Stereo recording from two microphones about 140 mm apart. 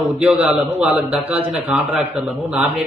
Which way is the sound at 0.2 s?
5° right (ahead or behind).